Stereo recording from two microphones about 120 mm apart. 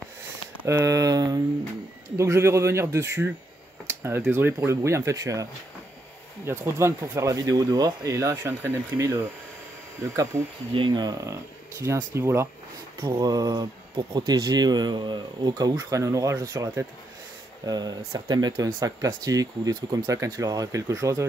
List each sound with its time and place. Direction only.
0.7 s speech: 25° right (ahead or behind)
3.8 s a sound: 20° right (ahead or behind)
4.3 s speech: 15° right (ahead or behind)
10.7 s speech: 40° right (ahead or behind); by 12.4 s 20° right (ahead or behind)
13.0 s speech: 30° right (ahead or behind)